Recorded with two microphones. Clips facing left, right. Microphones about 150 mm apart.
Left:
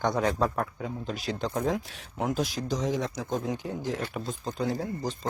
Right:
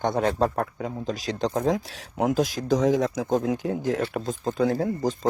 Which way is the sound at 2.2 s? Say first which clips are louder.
Right 6 dB; 45° right (ahead or behind).